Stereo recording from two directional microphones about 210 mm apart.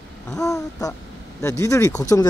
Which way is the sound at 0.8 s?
15° left (ahead or behind).